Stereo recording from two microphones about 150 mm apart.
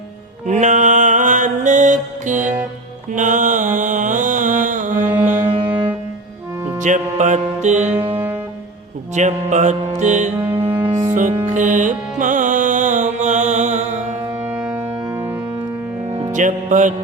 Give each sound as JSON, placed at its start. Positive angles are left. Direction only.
{"t": 0.4, "sound": "music", "side_deg": -55}
{"t": 3.1, "sound": "mantra", "side_deg": -55}
{"t": 4.9, "sound": "music", "side_deg": -10}
{"t": 5.5, "sound": "music", "side_deg": -35}
{"t": 6.7, "sound": "music", "side_deg": -55}
{"t": 7.9, "sound": "music", "side_deg": -35}
{"t": 9.1, "sound": "music", "side_deg": -55}
{"t": 10.5, "sound": "music", "side_deg": -35}
{"t": 11.4, "sound": "music", "side_deg": -60}
{"t": 14.4, "sound": "organ", "side_deg": -10}
{"t": 16.3, "sound": "music", "side_deg": -55}